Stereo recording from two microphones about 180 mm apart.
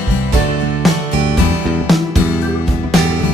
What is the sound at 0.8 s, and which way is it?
Music, centre (ahead or behind).